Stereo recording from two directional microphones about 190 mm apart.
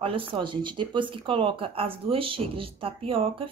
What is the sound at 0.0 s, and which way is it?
Speech, 30° right (ahead or behind).